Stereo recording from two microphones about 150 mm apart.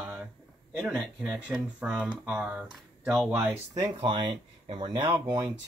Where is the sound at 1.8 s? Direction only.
10° right (ahead or behind).